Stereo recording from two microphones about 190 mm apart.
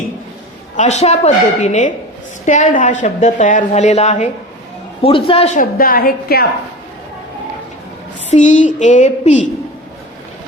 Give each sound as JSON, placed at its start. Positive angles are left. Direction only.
{"t": 0.8, "sound": "speech", "side_deg": 35}
{"t": 5.5, "sound": "a woman's voice", "side_deg": 50}
{"t": 8.3, "sound": "speech", "side_deg": 40}